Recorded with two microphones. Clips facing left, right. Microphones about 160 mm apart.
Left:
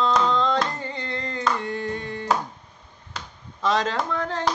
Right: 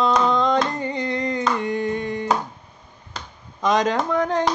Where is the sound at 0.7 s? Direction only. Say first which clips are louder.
Right 7 dB; 15° right (ahead or behind).